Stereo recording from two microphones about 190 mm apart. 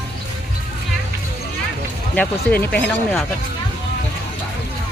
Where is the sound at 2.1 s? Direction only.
5° left (ahead or behind).